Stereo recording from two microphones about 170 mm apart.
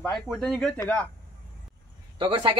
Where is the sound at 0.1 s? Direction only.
Centre (ahead or behind).